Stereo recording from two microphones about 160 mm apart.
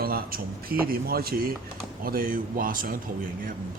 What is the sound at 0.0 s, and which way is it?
A man's voice, 65° right (ahead or behind).